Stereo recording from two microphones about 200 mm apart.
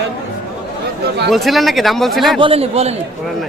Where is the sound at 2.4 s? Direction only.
30° right (ahead or behind).